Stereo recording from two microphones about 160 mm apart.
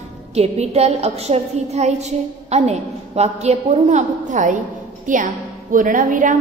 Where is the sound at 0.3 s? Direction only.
40° right (ahead or behind).